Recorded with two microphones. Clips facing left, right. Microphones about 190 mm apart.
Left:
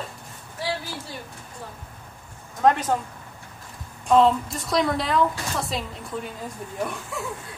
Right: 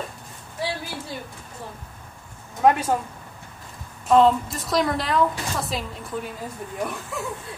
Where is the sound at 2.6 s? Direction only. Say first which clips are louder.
Right 1 dB; 10° right (ahead or behind).